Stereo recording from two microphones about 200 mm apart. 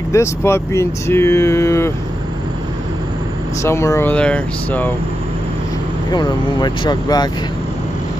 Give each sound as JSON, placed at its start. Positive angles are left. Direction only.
{"t": 0.1, "sound": "speech", "side_deg": 15}
{"t": 3.6, "sound": "speech", "side_deg": 15}
{"t": 6.1, "sound": "speech", "side_deg": 20}